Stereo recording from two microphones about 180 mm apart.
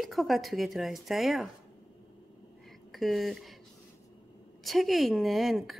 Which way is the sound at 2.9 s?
Centre (ahead or behind).